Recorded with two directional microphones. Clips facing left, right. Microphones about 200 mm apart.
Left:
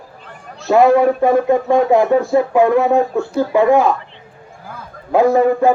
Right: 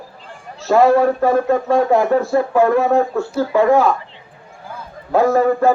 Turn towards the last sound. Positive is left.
turn(degrees=15)  # may be behind; listen again after turning